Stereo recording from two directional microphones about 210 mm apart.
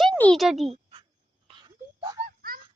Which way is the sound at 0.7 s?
25° right (ahead or behind).